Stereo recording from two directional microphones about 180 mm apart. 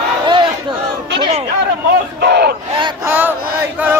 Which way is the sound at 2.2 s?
70° right (ahead or behind).